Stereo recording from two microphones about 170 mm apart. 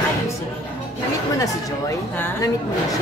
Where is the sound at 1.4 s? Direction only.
15° left (ahead or behind).